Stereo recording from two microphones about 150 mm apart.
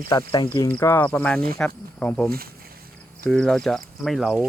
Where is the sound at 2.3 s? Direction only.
85° right.